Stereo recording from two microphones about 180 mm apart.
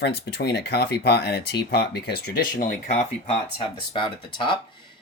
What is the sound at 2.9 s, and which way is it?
Speech, 35° left (ahead or behind).